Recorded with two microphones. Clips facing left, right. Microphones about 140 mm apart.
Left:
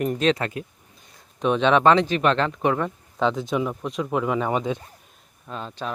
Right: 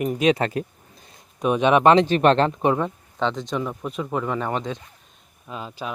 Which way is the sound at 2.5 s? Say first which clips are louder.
Right 2 dB; 25° right (ahead or behind).